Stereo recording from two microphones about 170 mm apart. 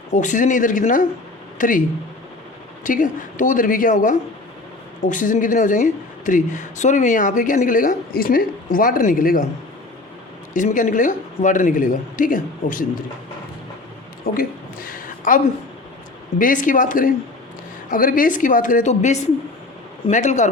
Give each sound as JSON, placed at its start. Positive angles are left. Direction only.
{"t": 0.1, "sound": "speech", "side_deg": 45}
{"t": 2.8, "sound": "speech", "side_deg": 50}
{"t": 10.5, "sound": "speech", "side_deg": 50}
{"t": 14.3, "sound": "a sound", "side_deg": 55}
{"t": 16.4, "sound": "speech", "side_deg": 50}